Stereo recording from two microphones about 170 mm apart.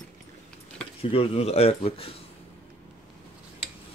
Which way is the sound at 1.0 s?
35° left (ahead or behind).